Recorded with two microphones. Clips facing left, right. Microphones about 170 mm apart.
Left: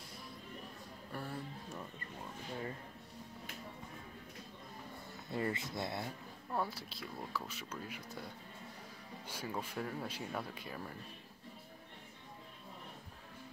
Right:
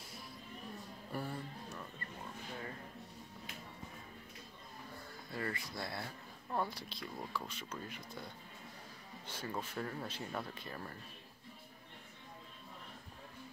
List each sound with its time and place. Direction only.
1.1 s speech: centre (ahead or behind)
5.3 s speech: 25° left (ahead or behind)
6.5 s speech: 5° left (ahead or behind)
9.3 s speech: 10° left (ahead or behind)